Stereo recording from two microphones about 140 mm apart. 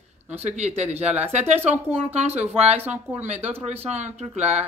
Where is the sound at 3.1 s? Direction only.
50° right (ahead or behind).